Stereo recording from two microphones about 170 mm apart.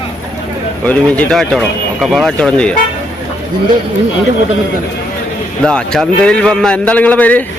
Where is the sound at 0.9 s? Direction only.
10° left (ahead or behind).